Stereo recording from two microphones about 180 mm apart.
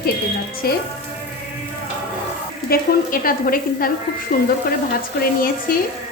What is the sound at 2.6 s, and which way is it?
A woman's voice, 55° left (ahead or behind).